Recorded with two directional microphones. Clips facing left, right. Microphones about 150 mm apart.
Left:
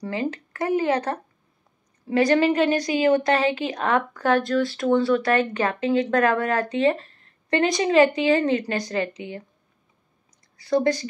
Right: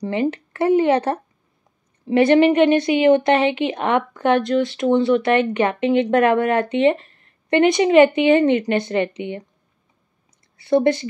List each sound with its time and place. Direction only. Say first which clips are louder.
0.0 s a woman's voice: right 6 dB; 25° right (ahead or behind)
10.6 s a woman's voice: right 4 dB; 25° right (ahead or behind)